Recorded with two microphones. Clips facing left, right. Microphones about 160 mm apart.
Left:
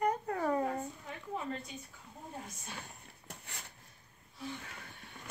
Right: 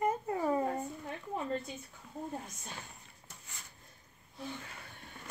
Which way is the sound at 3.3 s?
70° left (ahead or behind).